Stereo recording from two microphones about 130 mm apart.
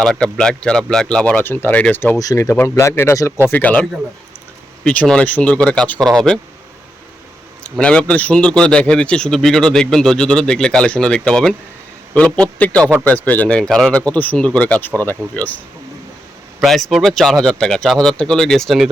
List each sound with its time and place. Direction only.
0.0 s a man's voice: 5° left (ahead or behind)
2.1 s a man's voice: 25° left (ahead or behind); by 6.4 s 5° left (ahead or behind)
7.6 s a man's voice: 10° left (ahead or behind)
16.6 s speech: centre (ahead or behind)